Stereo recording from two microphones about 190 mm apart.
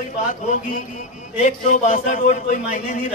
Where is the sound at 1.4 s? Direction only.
40° left (ahead or behind).